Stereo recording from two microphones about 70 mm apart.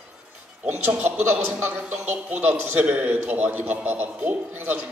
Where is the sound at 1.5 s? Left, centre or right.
Centre.